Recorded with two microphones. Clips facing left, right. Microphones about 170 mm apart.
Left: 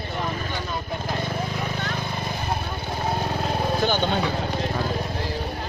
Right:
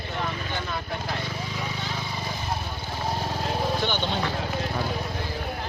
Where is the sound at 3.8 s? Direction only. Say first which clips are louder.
Left 5 dB; 45° left (ahead or behind).